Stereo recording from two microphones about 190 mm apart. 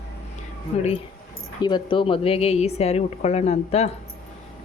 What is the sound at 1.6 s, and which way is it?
Speech, 25° left (ahead or behind).